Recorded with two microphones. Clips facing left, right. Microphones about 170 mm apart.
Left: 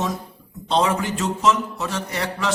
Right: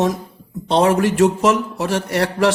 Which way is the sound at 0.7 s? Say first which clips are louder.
Right 6 dB; 65° right (ahead or behind).